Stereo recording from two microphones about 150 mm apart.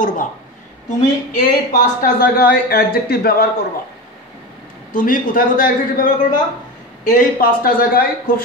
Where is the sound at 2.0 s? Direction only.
85° left.